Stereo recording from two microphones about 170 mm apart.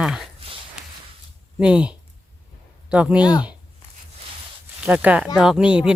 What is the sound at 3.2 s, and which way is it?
Speech, 25° left (ahead or behind).